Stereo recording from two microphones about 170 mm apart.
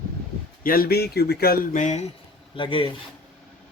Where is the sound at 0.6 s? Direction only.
60° left (ahead or behind).